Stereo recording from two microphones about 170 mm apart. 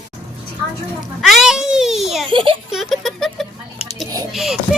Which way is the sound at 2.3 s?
30° right (ahead or behind).